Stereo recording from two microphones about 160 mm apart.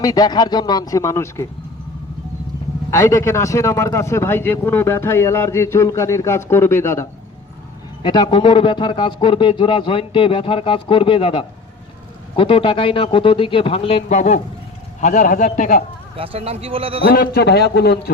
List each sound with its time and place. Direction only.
0.0 s speech: 25° left (ahead or behind)
2.9 s a man's voice: 20° left (ahead or behind)
8.0 s a man's voice: 30° left (ahead or behind); by 15.8 s 50° left (ahead or behind)
16.1 s speech: 35° right (ahead or behind)
17.1 s a man's voice: 80° left